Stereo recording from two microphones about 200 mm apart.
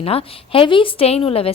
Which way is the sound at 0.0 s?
30° left (ahead or behind).